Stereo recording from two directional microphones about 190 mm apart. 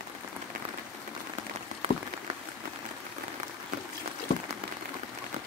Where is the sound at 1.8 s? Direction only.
30° right (ahead or behind).